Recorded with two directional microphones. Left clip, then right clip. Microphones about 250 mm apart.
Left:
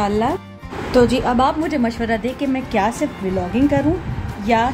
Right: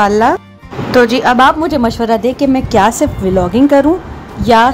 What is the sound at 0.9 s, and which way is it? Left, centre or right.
A woman's voice, centre.